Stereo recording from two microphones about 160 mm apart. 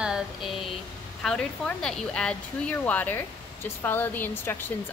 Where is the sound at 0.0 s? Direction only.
5° right (ahead or behind).